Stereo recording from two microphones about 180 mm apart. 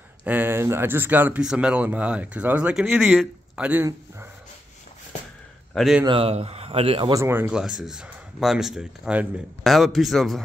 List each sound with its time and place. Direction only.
0.2 s speech: 10° right (ahead or behind)
5.8 s speech: centre (ahead or behind)
6.0 s speech: 30° right (ahead or behind)
7.2 s speech: 10° right (ahead or behind)